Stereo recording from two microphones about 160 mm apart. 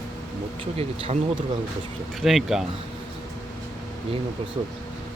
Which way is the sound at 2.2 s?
Centre (ahead or behind).